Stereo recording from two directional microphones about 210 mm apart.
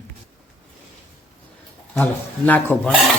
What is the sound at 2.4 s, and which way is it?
Speech, 10° left (ahead or behind).